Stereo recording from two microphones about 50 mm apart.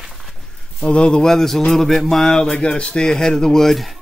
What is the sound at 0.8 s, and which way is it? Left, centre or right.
Speech, centre.